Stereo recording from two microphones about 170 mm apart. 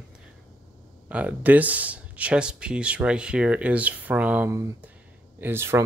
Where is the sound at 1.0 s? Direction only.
10° right (ahead or behind).